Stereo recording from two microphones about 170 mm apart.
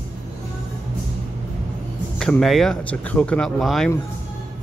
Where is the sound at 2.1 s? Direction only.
5° left (ahead or behind).